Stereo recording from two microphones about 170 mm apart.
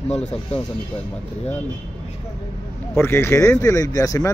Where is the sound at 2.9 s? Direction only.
15° left (ahead or behind).